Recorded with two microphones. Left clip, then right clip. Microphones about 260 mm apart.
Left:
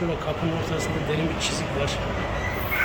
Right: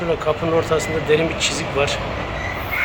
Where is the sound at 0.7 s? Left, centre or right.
Centre.